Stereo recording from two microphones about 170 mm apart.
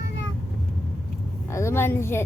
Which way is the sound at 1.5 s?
15° left (ahead or behind).